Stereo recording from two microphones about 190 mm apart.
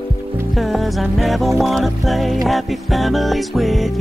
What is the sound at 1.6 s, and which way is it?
Speech, centre (ahead or behind).